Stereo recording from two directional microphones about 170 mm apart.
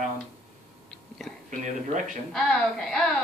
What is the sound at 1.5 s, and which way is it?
Speech, 45° right (ahead or behind).